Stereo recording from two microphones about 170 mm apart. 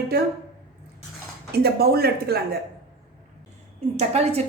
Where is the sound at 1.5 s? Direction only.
65° right (ahead or behind).